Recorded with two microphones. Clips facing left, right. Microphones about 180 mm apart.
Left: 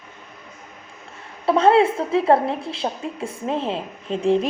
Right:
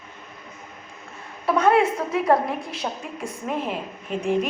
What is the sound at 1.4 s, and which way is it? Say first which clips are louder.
A woman's voice: left 3 dB; 30° left (ahead or behind).